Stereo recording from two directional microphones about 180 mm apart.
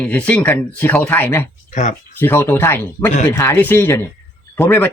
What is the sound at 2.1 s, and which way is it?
Speech, 10° left (ahead or behind).